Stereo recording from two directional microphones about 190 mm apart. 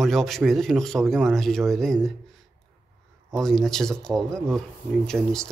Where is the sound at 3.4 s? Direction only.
Centre (ahead or behind).